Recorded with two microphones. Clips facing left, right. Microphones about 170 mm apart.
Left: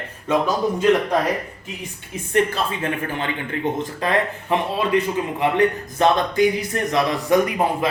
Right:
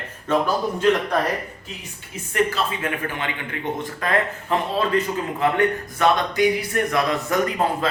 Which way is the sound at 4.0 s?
20° left (ahead or behind).